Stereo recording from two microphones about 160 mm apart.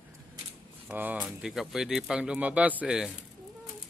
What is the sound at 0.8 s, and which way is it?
Speech, 10° right (ahead or behind).